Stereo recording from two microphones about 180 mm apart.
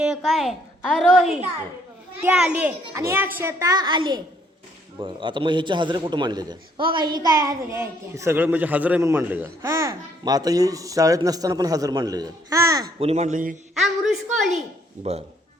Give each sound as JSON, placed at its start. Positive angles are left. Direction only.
{"t": 0.0, "sound": "a child's voice", "side_deg": -5}
{"t": 13.0, "sound": "speech", "side_deg": -35}
{"t": 13.7, "sound": "a child's voice", "side_deg": 0}